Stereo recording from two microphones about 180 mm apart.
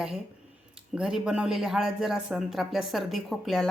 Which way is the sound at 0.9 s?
5° right (ahead or behind).